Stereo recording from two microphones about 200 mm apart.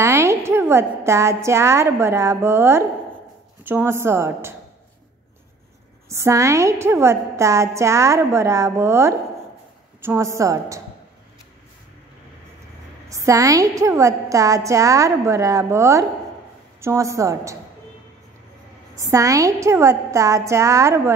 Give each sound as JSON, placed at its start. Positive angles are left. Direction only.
{"t": 0.0, "sound": "a woman's voice", "side_deg": -15}
{"t": 6.0, "sound": "a woman's voice", "side_deg": -15}
{"t": 13.1, "sound": "a woman's voice", "side_deg": -15}
{"t": 18.9, "sound": "a woman's voice", "side_deg": -15}